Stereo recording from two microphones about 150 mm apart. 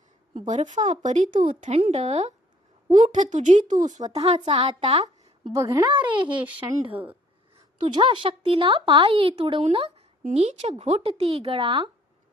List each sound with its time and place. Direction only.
0.3 s speech: 55° right (ahead or behind)
4.1 s speech: 45° right (ahead or behind)
5.5 s speech: 25° right (ahead or behind)
6.9 s speech: 10° right (ahead or behind)
7.9 s speech: 35° right (ahead or behind)